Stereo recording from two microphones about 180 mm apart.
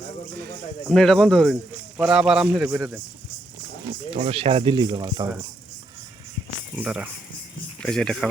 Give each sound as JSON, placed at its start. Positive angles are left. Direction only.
{"t": 0.9, "sound": "speech", "side_deg": 0}
{"t": 4.1, "sound": "speech", "side_deg": -35}
{"t": 6.7, "sound": "speech", "side_deg": -5}
{"t": 7.8, "sound": "speech", "side_deg": 5}